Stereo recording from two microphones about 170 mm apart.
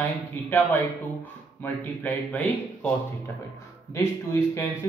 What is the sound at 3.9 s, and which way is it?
Speech, 15° left (ahead or behind).